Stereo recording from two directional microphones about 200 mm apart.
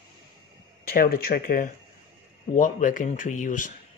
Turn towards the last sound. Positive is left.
turn(degrees=40)  # may be behind; listen again after turning